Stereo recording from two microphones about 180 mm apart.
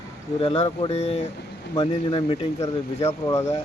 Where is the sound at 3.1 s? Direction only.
15° left (ahead or behind).